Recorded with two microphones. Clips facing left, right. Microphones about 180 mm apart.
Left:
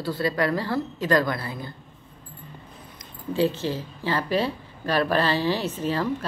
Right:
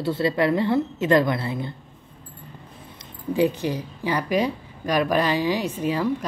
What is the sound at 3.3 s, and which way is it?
Speech, 15° right (ahead or behind).